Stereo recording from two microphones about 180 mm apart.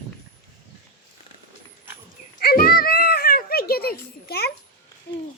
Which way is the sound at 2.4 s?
55° left (ahead or behind).